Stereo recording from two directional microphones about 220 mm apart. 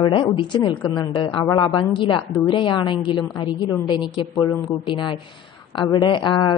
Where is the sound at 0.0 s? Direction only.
20° left (ahead or behind).